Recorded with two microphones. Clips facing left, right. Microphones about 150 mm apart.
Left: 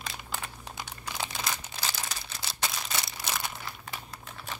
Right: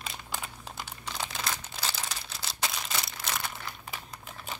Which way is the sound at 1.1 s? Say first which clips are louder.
Even; 5° left (ahead or behind).